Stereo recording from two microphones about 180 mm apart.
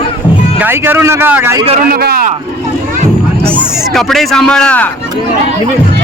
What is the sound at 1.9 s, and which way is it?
Speech, 55° right (ahead or behind).